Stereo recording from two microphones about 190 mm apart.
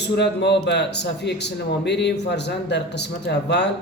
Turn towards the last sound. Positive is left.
turn(degrees=60)  # may be behind; listen again after turning